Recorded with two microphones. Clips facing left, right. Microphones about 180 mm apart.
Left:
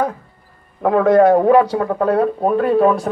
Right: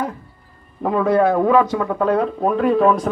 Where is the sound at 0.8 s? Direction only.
90° left.